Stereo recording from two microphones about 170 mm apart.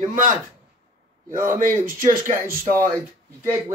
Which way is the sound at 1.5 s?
50° right (ahead or behind).